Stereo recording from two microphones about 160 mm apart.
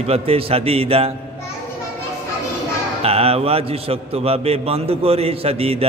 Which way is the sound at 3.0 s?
40° right (ahead or behind).